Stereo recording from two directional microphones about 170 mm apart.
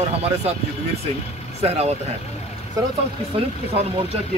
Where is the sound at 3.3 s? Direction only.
35° right (ahead or behind).